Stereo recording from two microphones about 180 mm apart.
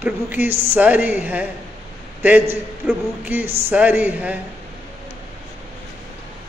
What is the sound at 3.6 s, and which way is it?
Speech, 10° right (ahead or behind).